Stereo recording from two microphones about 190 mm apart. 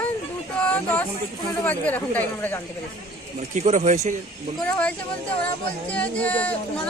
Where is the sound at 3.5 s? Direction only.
40° right (ahead or behind).